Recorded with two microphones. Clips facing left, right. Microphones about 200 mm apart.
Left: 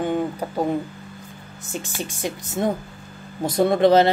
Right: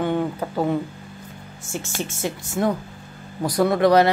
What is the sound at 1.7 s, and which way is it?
Speech, 15° left (ahead or behind).